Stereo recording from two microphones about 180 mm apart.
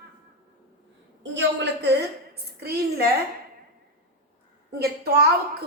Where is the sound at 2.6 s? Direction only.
60° right (ahead or behind).